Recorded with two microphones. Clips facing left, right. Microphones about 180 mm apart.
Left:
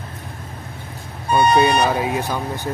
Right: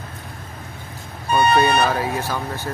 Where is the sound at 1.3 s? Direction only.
15° left (ahead or behind).